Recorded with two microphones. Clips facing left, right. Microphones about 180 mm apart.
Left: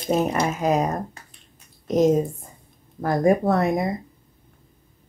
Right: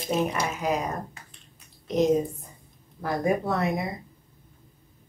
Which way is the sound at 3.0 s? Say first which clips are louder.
Left 6 dB; 45° left (ahead or behind).